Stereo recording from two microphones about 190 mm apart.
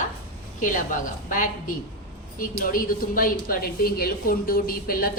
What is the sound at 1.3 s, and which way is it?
Speech, 45° left (ahead or behind).